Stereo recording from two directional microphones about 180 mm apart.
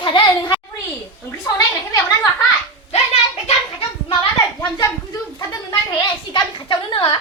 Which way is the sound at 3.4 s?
30° left (ahead or behind).